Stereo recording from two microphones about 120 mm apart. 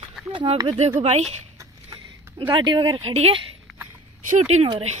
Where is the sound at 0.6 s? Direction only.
65° right (ahead or behind).